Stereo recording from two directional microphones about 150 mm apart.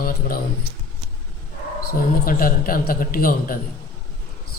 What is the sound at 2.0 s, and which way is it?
A man's voice, 75° left (ahead or behind).